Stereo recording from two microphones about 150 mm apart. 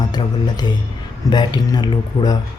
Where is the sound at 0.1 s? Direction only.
30° left (ahead or behind).